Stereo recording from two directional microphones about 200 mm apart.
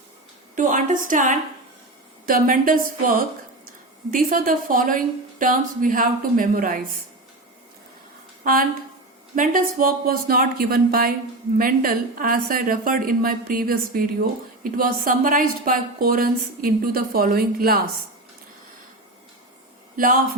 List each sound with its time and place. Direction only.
0.5 s a woman's voice: 40° right (ahead or behind)
9.3 s a woman's voice: 45° right (ahead or behind)
20.0 s a woman's voice: 45° right (ahead or behind)